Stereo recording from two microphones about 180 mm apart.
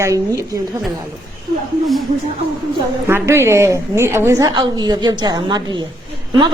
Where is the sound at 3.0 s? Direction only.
15° right (ahead or behind).